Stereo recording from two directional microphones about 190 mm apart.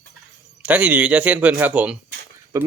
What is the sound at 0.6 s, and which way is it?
A man's voice, 5° right (ahead or behind).